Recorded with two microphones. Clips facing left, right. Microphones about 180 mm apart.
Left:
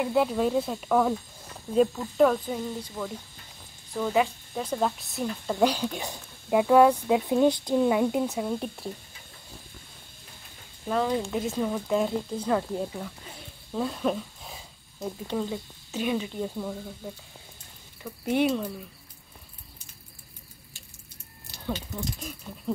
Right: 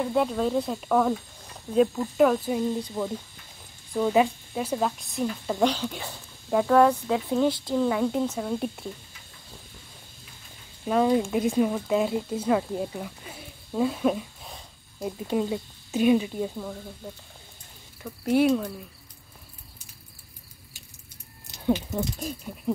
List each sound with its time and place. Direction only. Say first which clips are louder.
0.0 s speech: even; 5° left (ahead or behind)
3.0 s speech: right 1 dB; 25° right (ahead or behind)
4.6 s speech: right 1 dB; 5° right (ahead or behind)
5.6 s speech: left 1 dB; 10° left (ahead or behind)
10.9 s speech: right 4 dB; 15° right (ahead or behind)
15.0 s speech: right 3 dB; 15° right (ahead or behind)
18.0 s speech: right 3 dB; centre (ahead or behind)
21.5 s a sound: right 8 dB; 20° right (ahead or behind)
21.9 s speech: right 5 dB; 35° right (ahead or behind)